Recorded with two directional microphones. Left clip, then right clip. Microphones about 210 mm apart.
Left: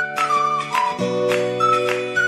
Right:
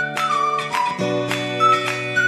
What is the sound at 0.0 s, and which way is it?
Music, centre (ahead or behind).